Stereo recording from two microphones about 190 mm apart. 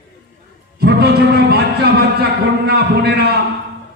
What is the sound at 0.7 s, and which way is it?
Music, 55° right (ahead or behind).